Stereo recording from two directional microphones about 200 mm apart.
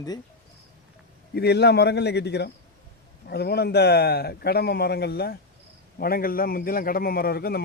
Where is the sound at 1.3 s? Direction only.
55° left (ahead or behind).